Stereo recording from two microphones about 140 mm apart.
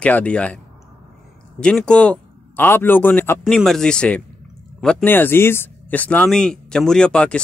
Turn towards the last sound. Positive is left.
turn(degrees=5)  # may be behind; listen again after turning